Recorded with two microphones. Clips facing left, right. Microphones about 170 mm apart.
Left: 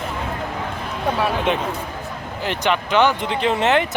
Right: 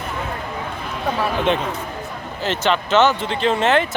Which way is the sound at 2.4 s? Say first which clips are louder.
Right 1 dB; 15° left (ahead or behind).